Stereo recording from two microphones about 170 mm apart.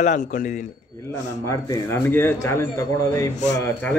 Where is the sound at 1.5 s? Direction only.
15° left (ahead or behind).